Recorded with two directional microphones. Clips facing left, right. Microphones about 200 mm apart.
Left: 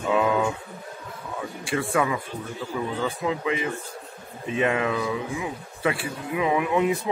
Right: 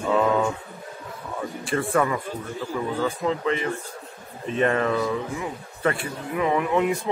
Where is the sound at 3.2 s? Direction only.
10° left (ahead or behind).